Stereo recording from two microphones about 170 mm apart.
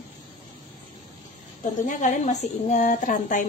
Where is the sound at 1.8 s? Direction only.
45° left (ahead or behind).